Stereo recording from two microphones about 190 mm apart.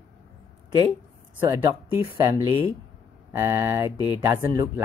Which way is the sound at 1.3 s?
15° right (ahead or behind).